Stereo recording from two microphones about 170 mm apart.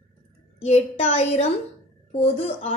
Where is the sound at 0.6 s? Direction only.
35° left (ahead or behind).